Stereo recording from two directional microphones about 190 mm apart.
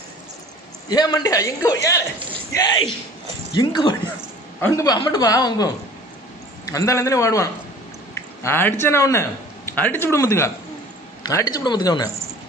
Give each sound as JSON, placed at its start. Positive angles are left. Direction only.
{"t": 0.8, "sound": "a man's voice", "side_deg": 20}
{"t": 4.6, "sound": "a man's voice", "side_deg": 15}